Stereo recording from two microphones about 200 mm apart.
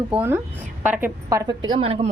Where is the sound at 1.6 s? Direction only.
25° right (ahead or behind).